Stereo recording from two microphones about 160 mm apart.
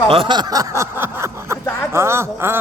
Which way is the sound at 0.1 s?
30° right (ahead or behind).